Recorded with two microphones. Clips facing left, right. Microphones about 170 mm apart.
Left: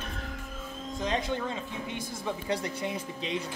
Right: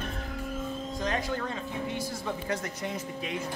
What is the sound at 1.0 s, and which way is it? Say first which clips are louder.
Speech: left 1 dB; 20° left (ahead or behind).